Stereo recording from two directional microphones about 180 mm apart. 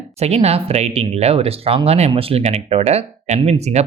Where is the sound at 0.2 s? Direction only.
35° right (ahead or behind).